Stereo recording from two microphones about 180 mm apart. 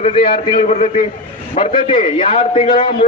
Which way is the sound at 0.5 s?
45° left (ahead or behind).